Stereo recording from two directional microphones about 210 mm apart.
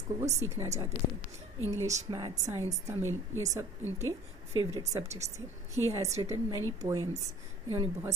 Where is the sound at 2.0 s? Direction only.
20° right (ahead or behind).